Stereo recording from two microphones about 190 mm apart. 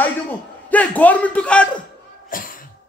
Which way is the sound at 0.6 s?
10° left (ahead or behind).